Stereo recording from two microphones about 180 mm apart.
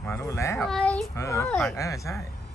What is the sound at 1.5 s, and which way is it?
Speech, centre (ahead or behind).